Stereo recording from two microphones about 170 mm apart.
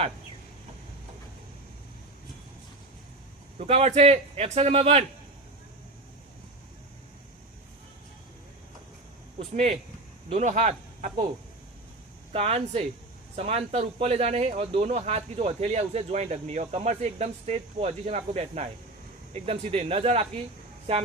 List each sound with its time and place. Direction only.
3.6 s speech: 35° right (ahead or behind)
10.2 s speech: 45° right (ahead or behind)
12.3 s speech: 35° right (ahead or behind)